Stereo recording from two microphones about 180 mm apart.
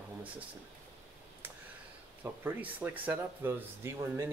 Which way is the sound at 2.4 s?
10° right (ahead or behind).